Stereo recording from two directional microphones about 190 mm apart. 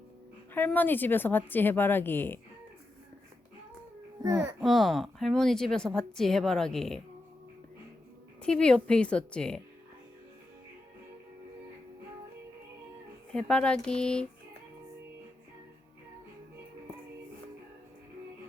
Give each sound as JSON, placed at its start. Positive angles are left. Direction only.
{"t": 0.5, "sound": "a woman's voice", "side_deg": 10}
{"t": 4.2, "sound": "a child's voice", "side_deg": -15}
{"t": 4.6, "sound": "a woman's voice", "side_deg": 0}
{"t": 8.4, "sound": "a woman's voice", "side_deg": 5}
{"t": 13.3, "sound": "a woman's voice", "side_deg": 5}